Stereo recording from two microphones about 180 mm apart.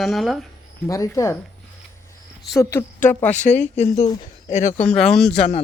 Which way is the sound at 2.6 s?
15° left (ahead or behind).